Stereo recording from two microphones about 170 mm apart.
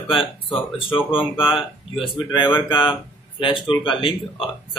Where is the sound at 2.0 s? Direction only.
30° left (ahead or behind).